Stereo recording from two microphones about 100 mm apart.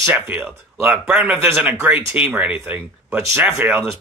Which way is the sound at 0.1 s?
15° right (ahead or behind).